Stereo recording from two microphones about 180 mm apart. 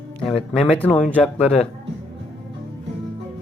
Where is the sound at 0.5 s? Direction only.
5° left (ahead or behind).